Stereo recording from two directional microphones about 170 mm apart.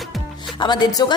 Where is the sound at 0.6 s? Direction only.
25° left (ahead or behind).